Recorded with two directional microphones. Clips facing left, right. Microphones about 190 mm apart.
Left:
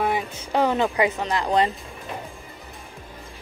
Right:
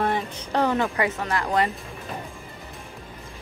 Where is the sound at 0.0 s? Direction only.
10° left (ahead or behind).